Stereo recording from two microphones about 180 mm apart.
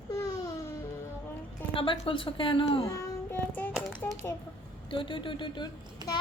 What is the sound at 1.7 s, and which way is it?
A woman's voice, 30° left (ahead or behind).